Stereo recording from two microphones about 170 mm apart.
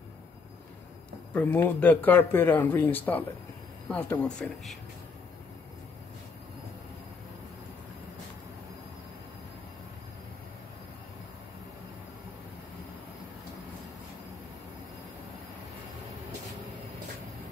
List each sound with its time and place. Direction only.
1.3 s speech: 10° left (ahead or behind)